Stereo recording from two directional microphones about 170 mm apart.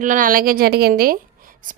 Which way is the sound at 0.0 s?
50° right (ahead or behind).